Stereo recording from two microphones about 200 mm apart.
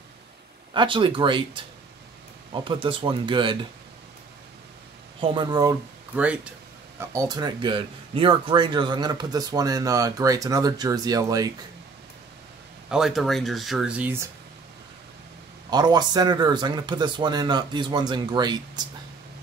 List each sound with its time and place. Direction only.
0.7 s speech: 25° right (ahead or behind)
5.2 s speech: 25° right (ahead or behind)
6.1 s speech: 5° right (ahead or behind)
7.2 s speech: 20° right (ahead or behind)
12.9 s speech: centre (ahead or behind)
15.7 s speech: 20° right (ahead or behind)